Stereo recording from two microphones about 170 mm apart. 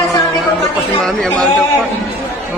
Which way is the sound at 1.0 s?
10° left (ahead or behind).